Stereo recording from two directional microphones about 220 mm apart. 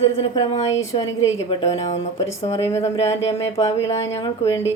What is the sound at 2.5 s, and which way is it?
Speech, 15° left (ahead or behind).